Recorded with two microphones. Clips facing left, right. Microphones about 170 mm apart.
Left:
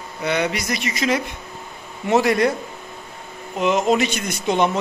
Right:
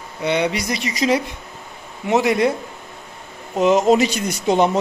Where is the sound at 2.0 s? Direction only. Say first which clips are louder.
Even; 20° right (ahead or behind).